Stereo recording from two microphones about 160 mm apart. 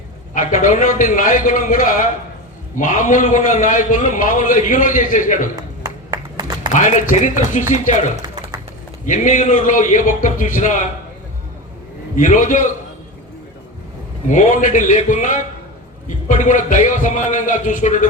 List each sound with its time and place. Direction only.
0.3 s a man's voice: 55° left (ahead or behind)
5.8 s a sound: 25° right (ahead or behind)
6.7 s a man's voice: 50° left (ahead or behind)
12.1 s a man's voice: 50° left (ahead or behind)
14.3 s a man's voice: 55° left (ahead or behind)